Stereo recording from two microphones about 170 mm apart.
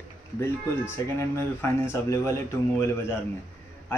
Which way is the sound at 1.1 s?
15° left (ahead or behind).